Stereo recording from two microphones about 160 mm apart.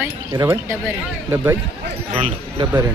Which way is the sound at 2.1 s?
35° right (ahead or behind).